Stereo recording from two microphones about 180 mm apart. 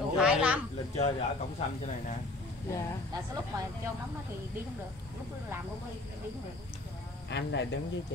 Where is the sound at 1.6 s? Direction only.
40° left (ahead or behind).